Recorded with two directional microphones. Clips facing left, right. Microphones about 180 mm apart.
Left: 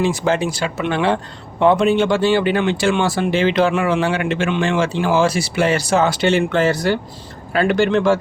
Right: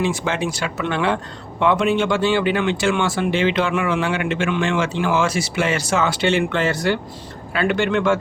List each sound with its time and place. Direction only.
0.0 s speech: 35° left (ahead or behind)